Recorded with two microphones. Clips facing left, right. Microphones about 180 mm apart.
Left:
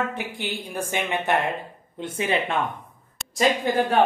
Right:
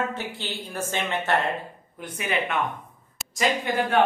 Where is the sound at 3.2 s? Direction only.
Centre (ahead or behind).